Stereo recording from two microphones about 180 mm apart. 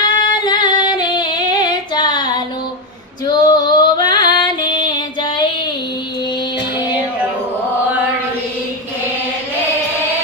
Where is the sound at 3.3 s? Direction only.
25° left (ahead or behind).